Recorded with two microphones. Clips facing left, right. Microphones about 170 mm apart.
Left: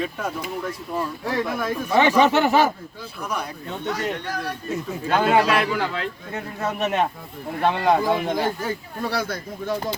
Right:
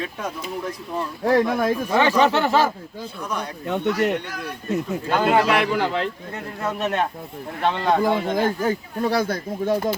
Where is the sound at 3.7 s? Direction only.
65° right (ahead or behind).